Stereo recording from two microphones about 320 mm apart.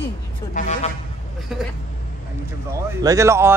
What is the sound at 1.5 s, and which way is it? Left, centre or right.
Speech, centre.